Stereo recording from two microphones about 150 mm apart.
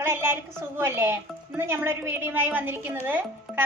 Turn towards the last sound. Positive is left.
turn(degrees=-15)  # may be behind; listen again after turning